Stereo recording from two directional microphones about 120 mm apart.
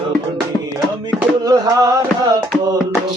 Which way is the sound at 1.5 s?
30° right (ahead or behind).